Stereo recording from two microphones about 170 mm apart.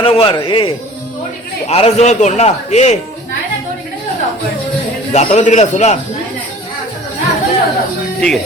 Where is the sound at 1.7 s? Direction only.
40° left (ahead or behind).